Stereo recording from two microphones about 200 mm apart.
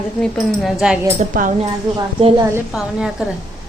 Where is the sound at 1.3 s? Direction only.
40° right (ahead or behind).